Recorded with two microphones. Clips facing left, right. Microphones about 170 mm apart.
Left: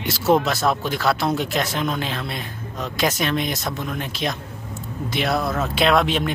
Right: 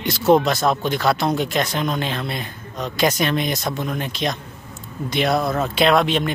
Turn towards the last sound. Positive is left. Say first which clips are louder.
# right 2 dB
turn(degrees=0)  # may be behind; listen again after turning